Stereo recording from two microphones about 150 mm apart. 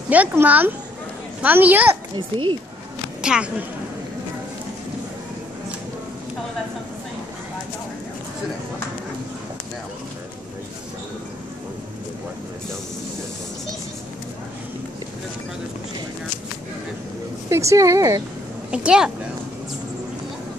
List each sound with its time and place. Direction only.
0.1 s speech: 10° right (ahead or behind)
3.2 s speech: 5° right (ahead or behind)
17.5 s speech: 20° right (ahead or behind)
18.7 s speech: 5° right (ahead or behind)